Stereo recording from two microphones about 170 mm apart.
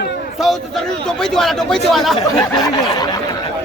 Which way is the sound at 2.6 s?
25° left (ahead or behind).